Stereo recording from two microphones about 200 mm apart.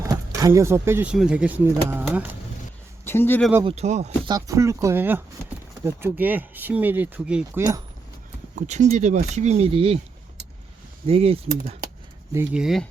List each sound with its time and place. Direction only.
0.0 s speech: 15° right (ahead or behind)
3.0 s speech: 10° left (ahead or behind)
3.6 s speech: 30° right (ahead or behind)
4.3 s speech: 15° right (ahead or behind)
8.5 s speech: 35° right (ahead or behind)
11.0 s speech: 30° right (ahead or behind)
12.5 s speech: centre (ahead or behind)